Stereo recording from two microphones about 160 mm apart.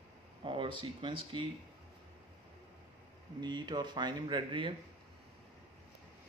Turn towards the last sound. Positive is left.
turn(degrees=-30)  # may be behind; listen again after turning